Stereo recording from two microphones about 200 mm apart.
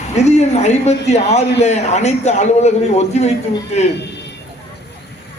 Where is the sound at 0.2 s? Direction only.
35° left (ahead or behind).